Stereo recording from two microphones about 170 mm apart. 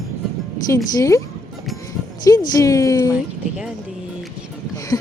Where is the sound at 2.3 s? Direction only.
20° left (ahead or behind).